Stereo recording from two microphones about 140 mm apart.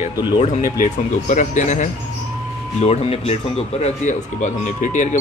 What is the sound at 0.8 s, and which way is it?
A man's voice, 65° left (ahead or behind).